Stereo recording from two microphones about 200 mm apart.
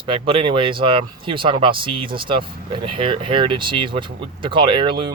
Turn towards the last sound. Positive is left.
turn(degrees=-25)  # may be behind; listen again after turning